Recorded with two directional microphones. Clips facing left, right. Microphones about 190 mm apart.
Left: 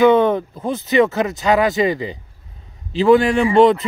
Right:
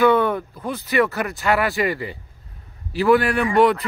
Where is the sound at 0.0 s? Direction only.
20° left (ahead or behind).